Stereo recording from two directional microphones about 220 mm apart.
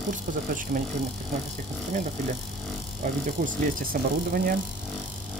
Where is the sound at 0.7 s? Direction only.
40° right (ahead or behind).